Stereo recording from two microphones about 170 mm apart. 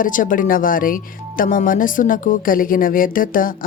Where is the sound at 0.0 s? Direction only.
50° left (ahead or behind).